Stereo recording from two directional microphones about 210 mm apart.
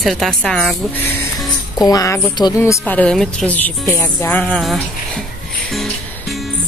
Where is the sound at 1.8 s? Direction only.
15° left (ahead or behind).